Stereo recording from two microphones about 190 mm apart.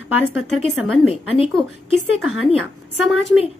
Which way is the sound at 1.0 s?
30° left (ahead or behind).